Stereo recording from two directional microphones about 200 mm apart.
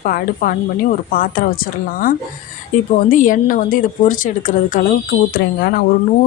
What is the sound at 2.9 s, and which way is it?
Speech, 40° left (ahead or behind).